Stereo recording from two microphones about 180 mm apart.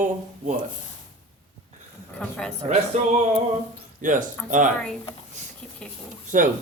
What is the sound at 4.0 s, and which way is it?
Speech, 45° right (ahead or behind).